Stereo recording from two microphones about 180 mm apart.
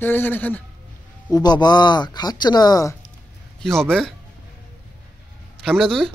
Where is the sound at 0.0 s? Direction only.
10° left (ahead or behind).